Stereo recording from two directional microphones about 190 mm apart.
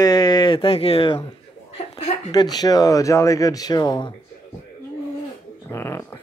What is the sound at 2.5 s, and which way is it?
Speech, 20° left (ahead or behind).